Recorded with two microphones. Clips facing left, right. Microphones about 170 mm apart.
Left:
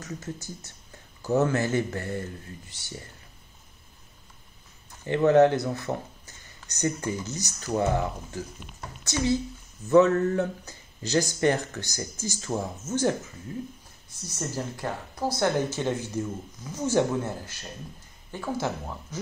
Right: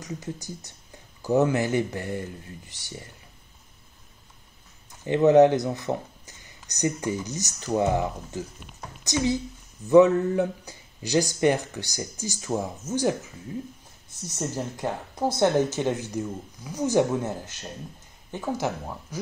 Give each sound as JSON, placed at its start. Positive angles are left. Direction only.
{"t": 0.0, "sound": "speech", "side_deg": -15}
{"t": 5.0, "sound": "speech", "side_deg": -15}
{"t": 14.4, "sound": "speech", "side_deg": -20}